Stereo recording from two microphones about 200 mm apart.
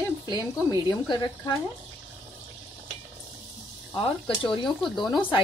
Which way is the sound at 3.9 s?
25° left (ahead or behind).